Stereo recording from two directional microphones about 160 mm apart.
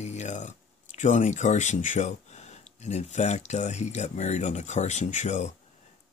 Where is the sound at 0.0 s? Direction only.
45° left (ahead or behind).